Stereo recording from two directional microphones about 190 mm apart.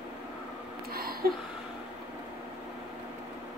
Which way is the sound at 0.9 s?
50° right (ahead or behind).